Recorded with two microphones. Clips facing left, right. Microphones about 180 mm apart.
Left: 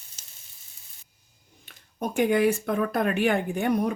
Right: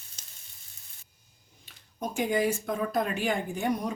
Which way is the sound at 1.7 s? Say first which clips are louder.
Left 4 dB; 60° left (ahead or behind).